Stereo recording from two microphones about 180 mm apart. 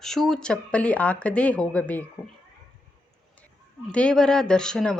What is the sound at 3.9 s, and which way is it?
Speech, 5° left (ahead or behind).